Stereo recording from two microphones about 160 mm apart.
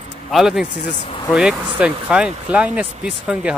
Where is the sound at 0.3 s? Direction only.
5° right (ahead or behind).